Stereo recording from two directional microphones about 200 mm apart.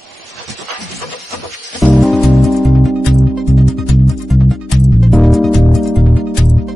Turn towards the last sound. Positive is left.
turn(degrees=0)  # may be behind; listen again after turning